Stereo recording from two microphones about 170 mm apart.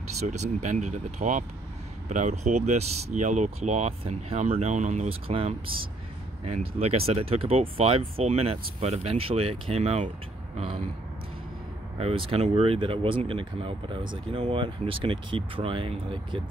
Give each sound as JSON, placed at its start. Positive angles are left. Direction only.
{"t": 0.3, "sound": "speech", "side_deg": -45}
{"t": 12.0, "sound": "speech", "side_deg": -35}